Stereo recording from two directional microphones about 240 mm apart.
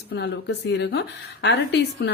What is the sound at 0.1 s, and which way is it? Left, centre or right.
Speech, left.